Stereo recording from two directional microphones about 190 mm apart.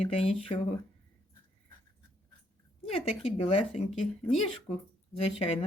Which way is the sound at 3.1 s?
30° left (ahead or behind).